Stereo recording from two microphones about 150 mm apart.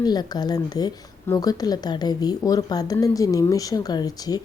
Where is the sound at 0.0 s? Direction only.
25° left (ahead or behind).